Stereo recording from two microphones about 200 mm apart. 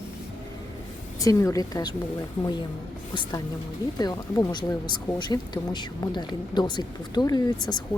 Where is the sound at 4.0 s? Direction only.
20° left (ahead or behind).